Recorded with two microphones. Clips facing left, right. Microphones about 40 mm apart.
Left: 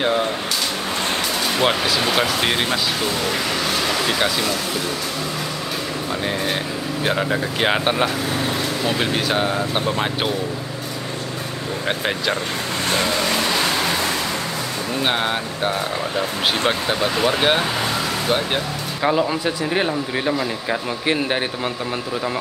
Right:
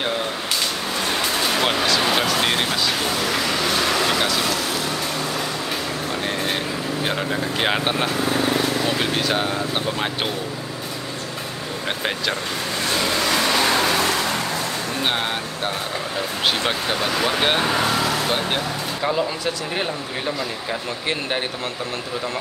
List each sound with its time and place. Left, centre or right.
1.6 s speech: centre
7.1 s speech: centre
15.0 s speech: centre
17.2 s speech: centre
19.0 s speech: centre